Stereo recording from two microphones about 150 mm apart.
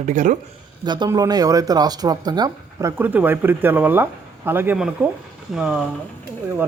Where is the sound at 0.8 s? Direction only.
30° right (ahead or behind).